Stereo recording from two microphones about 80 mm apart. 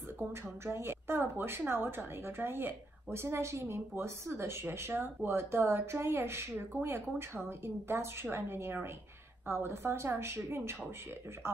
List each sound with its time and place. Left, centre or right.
0.3 s speech: right